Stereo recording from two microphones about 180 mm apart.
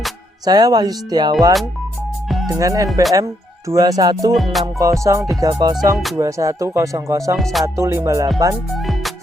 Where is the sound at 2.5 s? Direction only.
20° right (ahead or behind).